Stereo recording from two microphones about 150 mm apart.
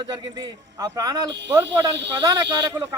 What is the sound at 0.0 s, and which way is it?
A man's voice, 25° right (ahead or behind).